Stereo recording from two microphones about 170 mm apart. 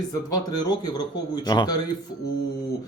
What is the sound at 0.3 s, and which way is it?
Speech, 25° left (ahead or behind).